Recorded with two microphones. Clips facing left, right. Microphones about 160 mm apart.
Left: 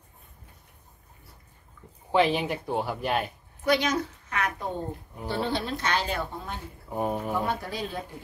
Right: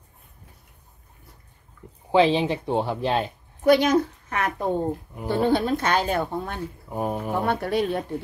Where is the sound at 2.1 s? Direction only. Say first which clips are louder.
Right 5 dB; 20° right (ahead or behind).